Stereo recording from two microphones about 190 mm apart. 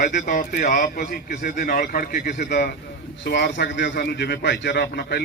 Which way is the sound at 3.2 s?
65° left (ahead or behind).